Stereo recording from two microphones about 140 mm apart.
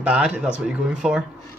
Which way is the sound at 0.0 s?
10° right (ahead or behind).